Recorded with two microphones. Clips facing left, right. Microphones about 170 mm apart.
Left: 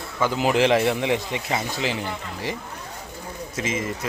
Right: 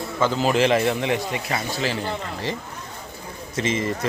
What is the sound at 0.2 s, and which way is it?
Speech, 15° left (ahead or behind).